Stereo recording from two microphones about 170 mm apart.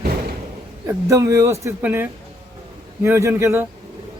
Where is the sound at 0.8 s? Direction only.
15° right (ahead or behind).